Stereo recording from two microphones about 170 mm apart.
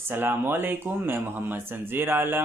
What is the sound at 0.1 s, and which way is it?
Speech, 10° right (ahead or behind).